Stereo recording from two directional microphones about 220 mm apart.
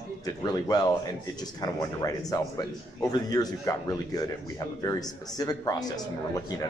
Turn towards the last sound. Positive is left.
turn(degrees=15)  # may be behind; listen again after turning